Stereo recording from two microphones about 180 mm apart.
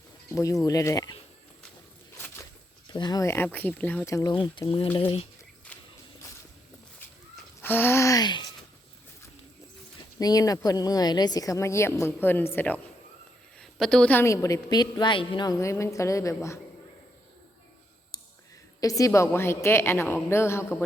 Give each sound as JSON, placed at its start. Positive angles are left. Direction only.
{"t": 0.3, "sound": "speech", "side_deg": 20}
{"t": 2.9, "sound": "a woman's voice", "side_deg": 20}
{"t": 7.6, "sound": "a woman's voice", "side_deg": 10}
{"t": 10.0, "sound": "a woman's voice", "side_deg": 20}
{"t": 18.8, "sound": "a woman's voice", "side_deg": 20}